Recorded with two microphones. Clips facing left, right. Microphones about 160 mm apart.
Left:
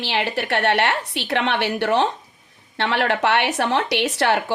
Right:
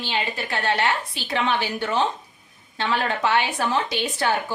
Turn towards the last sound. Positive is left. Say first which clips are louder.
# left 4 dB
turn(degrees=75)  # may be behind; listen again after turning